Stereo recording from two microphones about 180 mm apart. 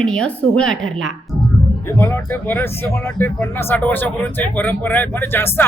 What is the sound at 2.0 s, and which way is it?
Speech, 15° left (ahead or behind).